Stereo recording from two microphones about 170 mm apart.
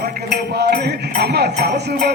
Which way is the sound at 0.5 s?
75° right (ahead or behind).